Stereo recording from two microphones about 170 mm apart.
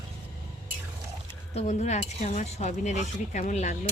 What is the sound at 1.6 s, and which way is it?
Speech, 40° left (ahead or behind).